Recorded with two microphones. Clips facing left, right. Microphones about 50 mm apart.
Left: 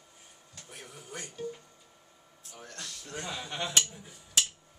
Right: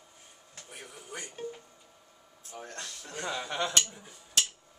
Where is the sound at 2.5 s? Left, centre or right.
Right.